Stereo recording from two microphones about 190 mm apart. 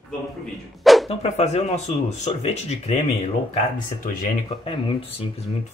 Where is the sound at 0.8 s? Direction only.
Centre (ahead or behind).